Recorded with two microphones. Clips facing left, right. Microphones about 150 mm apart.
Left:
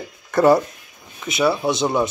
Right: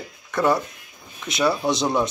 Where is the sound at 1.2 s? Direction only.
5° left (ahead or behind).